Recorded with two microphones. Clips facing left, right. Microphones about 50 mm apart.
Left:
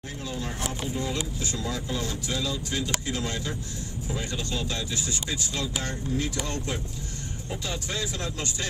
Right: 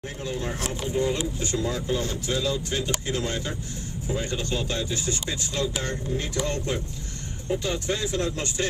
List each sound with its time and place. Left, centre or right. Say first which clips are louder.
0.9 s speech: right 5 dB; right